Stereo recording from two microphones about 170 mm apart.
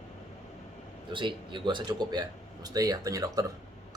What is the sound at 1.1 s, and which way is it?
Speech, 25° right (ahead or behind).